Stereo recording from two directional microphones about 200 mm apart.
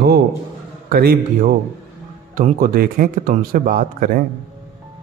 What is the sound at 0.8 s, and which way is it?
Speech, 45° right (ahead or behind).